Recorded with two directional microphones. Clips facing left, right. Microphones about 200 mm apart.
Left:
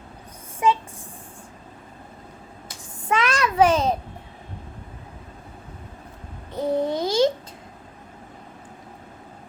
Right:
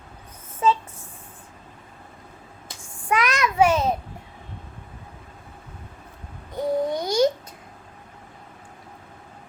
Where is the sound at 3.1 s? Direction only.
25° left (ahead or behind).